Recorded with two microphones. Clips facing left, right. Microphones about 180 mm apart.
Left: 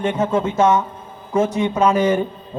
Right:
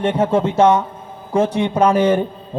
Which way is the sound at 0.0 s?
30° right (ahead or behind).